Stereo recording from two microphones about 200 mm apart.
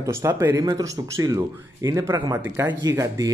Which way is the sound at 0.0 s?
15° right (ahead or behind).